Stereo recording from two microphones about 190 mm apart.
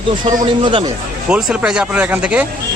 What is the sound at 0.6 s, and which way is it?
Speech, 30° right (ahead or behind).